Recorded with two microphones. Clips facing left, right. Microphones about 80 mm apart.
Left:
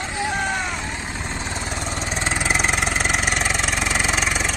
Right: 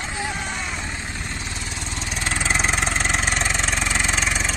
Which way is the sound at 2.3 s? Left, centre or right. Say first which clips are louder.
Even; centre.